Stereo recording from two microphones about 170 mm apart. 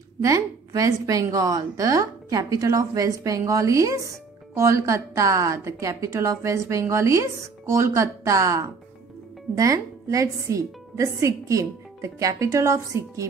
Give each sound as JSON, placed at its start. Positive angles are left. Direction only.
{"t": 0.2, "sound": "a woman's voice", "side_deg": -20}